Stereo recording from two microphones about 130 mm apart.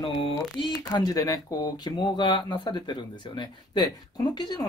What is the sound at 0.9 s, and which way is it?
Speech, 30° left (ahead or behind).